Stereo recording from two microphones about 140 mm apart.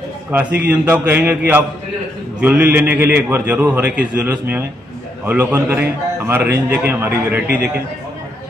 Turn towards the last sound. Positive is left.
turn(degrees=-10)  # may be behind; listen again after turning